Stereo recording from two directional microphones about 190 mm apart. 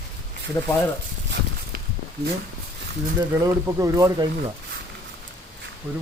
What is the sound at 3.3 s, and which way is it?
Speech, 15° right (ahead or behind).